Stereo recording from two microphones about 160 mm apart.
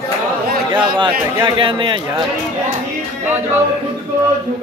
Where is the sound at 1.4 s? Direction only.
30° right (ahead or behind).